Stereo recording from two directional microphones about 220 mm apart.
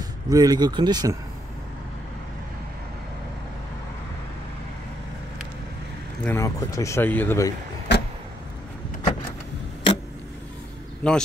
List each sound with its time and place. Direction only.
0.0 s speech: 15° right (ahead or behind)
6.2 s speech: 15° left (ahead or behind)
7.9 s vehicle: 50° left (ahead or behind)
11.0 s speech: 5° left (ahead or behind)